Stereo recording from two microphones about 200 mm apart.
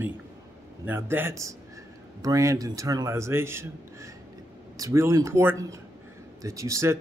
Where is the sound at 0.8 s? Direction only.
10° right (ahead or behind).